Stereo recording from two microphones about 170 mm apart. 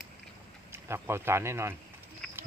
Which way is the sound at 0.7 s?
15° right (ahead or behind).